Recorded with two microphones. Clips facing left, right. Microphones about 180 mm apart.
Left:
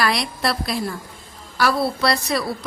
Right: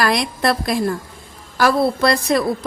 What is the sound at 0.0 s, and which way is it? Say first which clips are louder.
Speech: right 4 dB; 45° right (ahead or behind).